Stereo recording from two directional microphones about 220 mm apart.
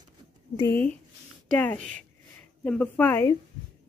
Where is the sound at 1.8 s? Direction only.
35° right (ahead or behind).